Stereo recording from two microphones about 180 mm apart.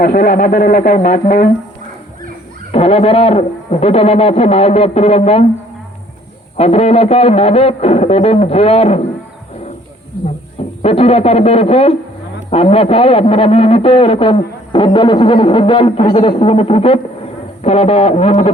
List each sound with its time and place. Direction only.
0.0 s speech: 55° left (ahead or behind)
2.7 s speech: 35° left (ahead or behind)
6.6 s speech: 35° left (ahead or behind)
10.8 s speech: 35° left (ahead or behind)
14.9 s music: 25° left (ahead or behind)
17.6 s speech: 35° left (ahead or behind)